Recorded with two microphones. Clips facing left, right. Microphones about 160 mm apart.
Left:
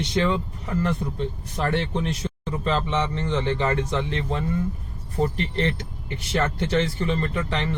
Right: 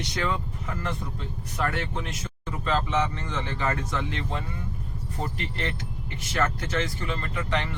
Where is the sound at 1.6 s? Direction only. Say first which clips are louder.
Left 5 dB; 30° left (ahead or behind).